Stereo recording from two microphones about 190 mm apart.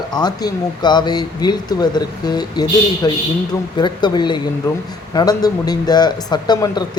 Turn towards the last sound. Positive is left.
turn(degrees=20)  # may be behind; listen again after turning